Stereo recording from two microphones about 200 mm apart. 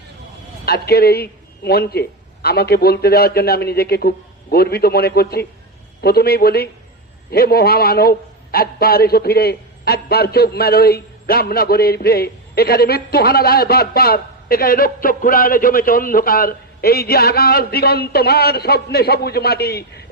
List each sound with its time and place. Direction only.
0.6 s a man's voice: 50° left (ahead or behind)